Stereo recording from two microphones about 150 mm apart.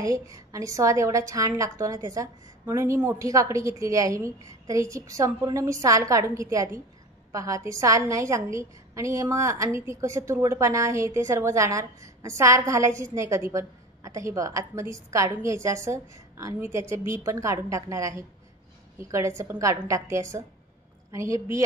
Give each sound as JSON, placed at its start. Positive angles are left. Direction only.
{"t": 0.0, "sound": "a woman's voice", "side_deg": -20}